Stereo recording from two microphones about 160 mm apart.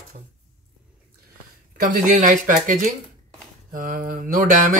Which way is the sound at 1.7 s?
55° right (ahead or behind).